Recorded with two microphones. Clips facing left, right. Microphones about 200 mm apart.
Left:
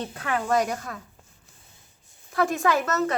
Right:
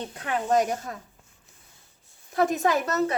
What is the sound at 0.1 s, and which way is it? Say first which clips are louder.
Speech: right 2 dB; 20° right (ahead or behind).